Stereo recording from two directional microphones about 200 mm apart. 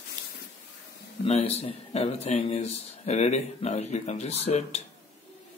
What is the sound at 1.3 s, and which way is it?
Speech, 30° left (ahead or behind).